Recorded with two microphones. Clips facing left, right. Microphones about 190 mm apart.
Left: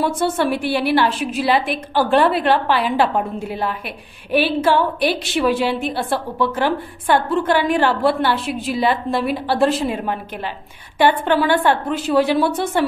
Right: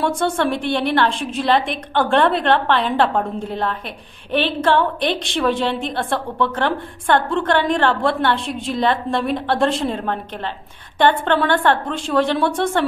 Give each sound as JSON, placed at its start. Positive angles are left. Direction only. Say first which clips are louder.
{"t": 0.0, "sound": "a woman's voice", "louder": "even", "side_deg": 5}